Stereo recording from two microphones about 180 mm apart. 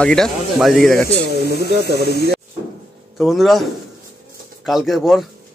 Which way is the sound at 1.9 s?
65° right (ahead or behind).